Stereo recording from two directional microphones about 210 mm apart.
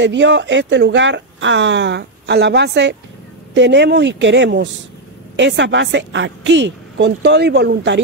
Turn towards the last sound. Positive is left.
turn(degrees=-55)  # may be behind; listen again after turning